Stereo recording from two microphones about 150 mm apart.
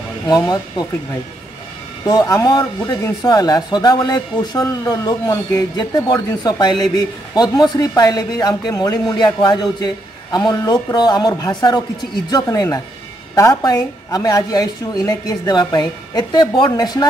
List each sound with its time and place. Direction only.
0.3 s a man's voice: 25° left (ahead or behind)
2.0 s a man's voice: 20° left (ahead or behind)